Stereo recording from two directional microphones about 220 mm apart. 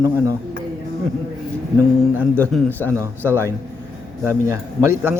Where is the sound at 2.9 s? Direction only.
10° right (ahead or behind).